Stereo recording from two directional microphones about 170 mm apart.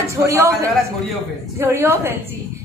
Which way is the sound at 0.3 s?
20° right (ahead or behind).